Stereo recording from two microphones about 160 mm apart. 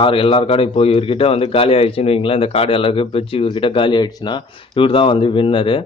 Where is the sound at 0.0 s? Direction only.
35° left (ahead or behind).